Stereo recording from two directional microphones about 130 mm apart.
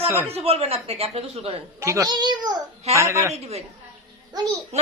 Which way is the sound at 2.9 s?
20° right (ahead or behind).